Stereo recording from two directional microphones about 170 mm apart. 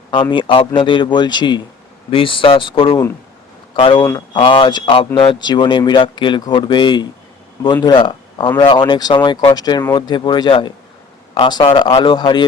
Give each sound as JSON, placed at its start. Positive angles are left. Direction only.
{"t": 0.1, "sound": "speech", "side_deg": 25}